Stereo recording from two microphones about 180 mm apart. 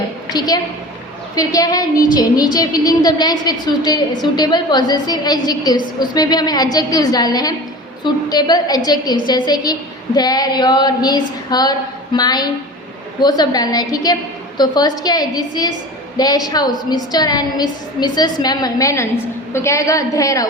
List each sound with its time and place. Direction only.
0.3 s a woman's voice: 20° left (ahead or behind)